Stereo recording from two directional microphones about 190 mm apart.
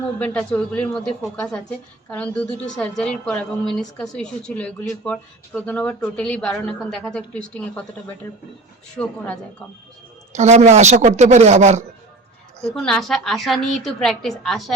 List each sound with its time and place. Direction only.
0.2 s a woman's voice: 5° left (ahead or behind)
9.0 s speech: 5° left (ahead or behind)
10.3 s a woman's voice: 35° right (ahead or behind)
12.6 s speech: centre (ahead or behind)